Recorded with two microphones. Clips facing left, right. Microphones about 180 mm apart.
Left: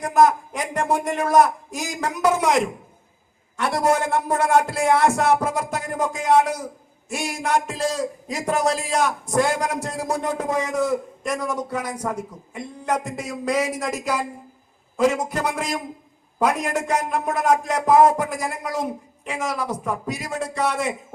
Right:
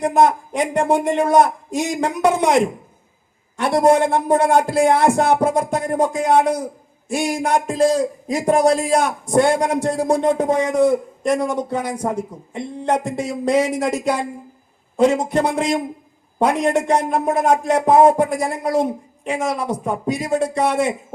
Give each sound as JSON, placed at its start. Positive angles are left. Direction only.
{"t": 0.0, "sound": "a man's voice", "side_deg": -30}